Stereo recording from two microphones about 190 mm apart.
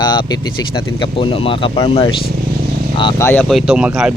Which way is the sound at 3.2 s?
15° left (ahead or behind).